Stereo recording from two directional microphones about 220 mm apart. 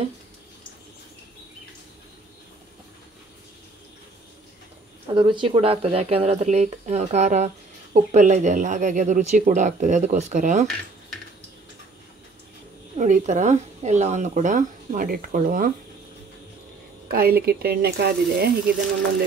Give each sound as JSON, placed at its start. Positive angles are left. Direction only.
{"t": 5.0, "sound": "speech", "side_deg": -20}
{"t": 12.9, "sound": "speech", "side_deg": -30}
{"t": 17.1, "sound": "speech", "side_deg": -45}